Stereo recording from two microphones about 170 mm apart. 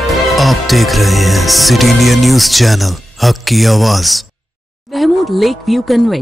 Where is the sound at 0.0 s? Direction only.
Centre (ahead or behind).